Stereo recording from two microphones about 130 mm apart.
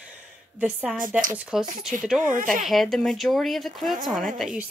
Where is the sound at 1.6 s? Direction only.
75° right (ahead or behind).